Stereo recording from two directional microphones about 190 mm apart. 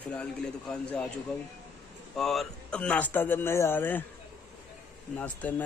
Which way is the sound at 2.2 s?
Centre (ahead or behind).